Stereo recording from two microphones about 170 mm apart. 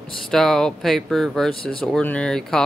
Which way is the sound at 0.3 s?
Centre (ahead or behind).